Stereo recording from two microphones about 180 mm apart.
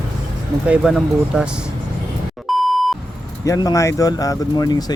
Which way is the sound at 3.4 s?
20° left (ahead or behind).